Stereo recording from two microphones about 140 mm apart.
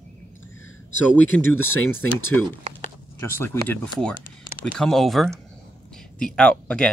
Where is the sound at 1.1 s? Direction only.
15° left (ahead or behind).